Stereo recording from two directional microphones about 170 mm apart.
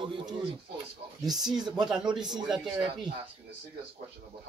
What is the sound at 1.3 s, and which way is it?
Speech, 5° right (ahead or behind).